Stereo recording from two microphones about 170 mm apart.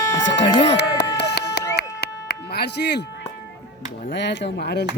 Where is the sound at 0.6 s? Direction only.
85° left.